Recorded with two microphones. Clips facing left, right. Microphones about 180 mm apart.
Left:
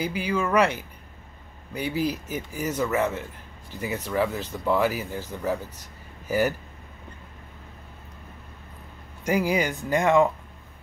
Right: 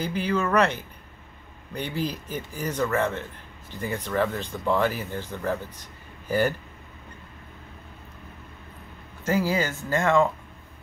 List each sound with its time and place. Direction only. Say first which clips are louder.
0.0 s speech: even; 10° left (ahead or behind)
9.2 s speech: left 1 dB; 15° left (ahead or behind)